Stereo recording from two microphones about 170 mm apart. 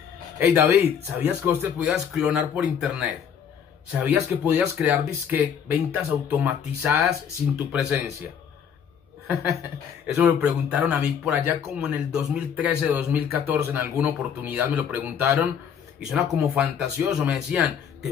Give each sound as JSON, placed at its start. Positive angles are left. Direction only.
{"t": 0.4, "sound": "speech", "side_deg": -10}
{"t": 1.9, "sound": "speech", "side_deg": 0}
{"t": 9.3, "sound": "speech", "side_deg": -15}
{"t": 10.0, "sound": "speech", "side_deg": -5}